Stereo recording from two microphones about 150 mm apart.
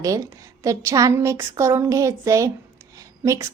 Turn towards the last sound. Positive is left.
turn(degrees=-20)  # may be behind; listen again after turning